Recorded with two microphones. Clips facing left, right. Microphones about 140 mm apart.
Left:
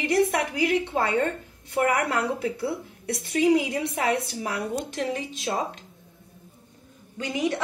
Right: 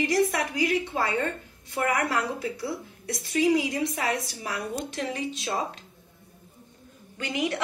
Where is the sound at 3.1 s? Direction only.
50° left (ahead or behind).